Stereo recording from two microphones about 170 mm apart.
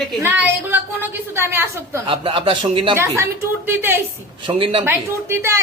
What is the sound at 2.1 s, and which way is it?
Speech, 30° right (ahead or behind).